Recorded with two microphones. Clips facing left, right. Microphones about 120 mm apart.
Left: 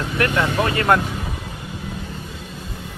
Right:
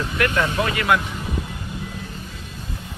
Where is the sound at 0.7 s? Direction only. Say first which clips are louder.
Left 4 dB; 40° left (ahead or behind).